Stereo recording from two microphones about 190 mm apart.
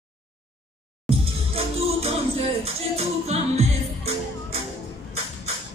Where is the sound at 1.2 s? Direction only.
30° right (ahead or behind).